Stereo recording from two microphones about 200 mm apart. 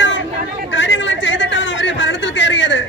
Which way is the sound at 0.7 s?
70° left (ahead or behind).